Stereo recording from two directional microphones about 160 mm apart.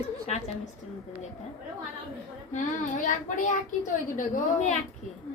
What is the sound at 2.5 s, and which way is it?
Child singing, 50° left (ahead or behind).